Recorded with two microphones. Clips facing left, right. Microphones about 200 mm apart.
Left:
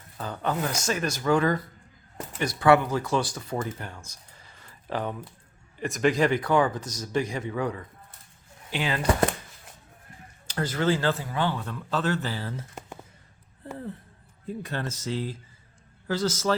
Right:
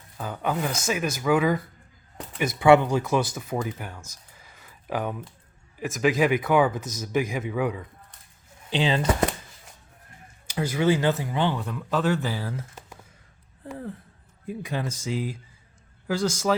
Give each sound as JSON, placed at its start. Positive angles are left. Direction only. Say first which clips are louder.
{"t": 0.2, "sound": "speech", "louder": "right 1 dB", "side_deg": -10}
{"t": 2.5, "sound": "speech", "louder": "right 3 dB", "side_deg": -15}
{"t": 4.4, "sound": "a sound", "louder": "right 2 dB", "side_deg": -5}
{"t": 5.8, "sound": "speech", "louder": "right 1 dB", "side_deg": -5}
{"t": 8.7, "sound": "speech", "louder": "right 5 dB", "side_deg": -25}
{"t": 10.4, "sound": "speech", "louder": "right 3 dB", "side_deg": -10}
{"t": 14.4, "sound": "speech", "louder": "right 2 dB", "side_deg": -10}